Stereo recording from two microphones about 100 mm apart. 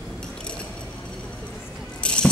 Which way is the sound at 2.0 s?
10° left (ahead or behind).